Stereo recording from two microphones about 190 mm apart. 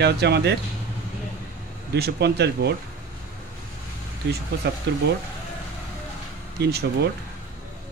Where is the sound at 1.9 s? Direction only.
60° right (ahead or behind).